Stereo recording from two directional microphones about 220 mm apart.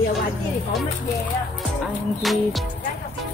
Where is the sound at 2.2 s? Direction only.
Centre (ahead or behind).